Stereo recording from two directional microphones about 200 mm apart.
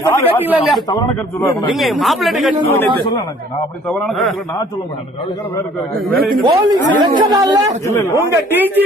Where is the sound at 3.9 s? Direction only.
Centre (ahead or behind).